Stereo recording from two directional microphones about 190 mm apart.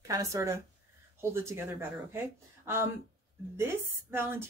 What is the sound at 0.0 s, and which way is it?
Speech, 15° right (ahead or behind).